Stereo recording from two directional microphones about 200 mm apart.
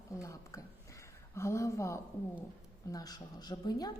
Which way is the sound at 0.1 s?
15° left (ahead or behind).